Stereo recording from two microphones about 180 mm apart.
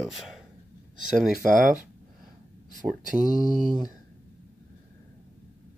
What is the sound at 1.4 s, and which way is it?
Speech, 50° right (ahead or behind).